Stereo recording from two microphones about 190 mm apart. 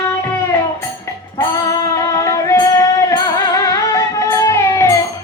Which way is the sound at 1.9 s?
15° left (ahead or behind).